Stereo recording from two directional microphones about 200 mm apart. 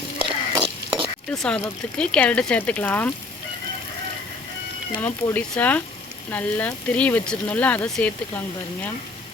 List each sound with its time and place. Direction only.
0.2 s a sound: 25° right (ahead or behind)
1.3 s speech: 5° left (ahead or behind)
4.9 s speech: 10° left (ahead or behind)